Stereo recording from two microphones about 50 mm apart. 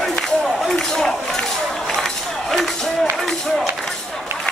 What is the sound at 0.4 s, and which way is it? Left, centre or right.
Run, centre.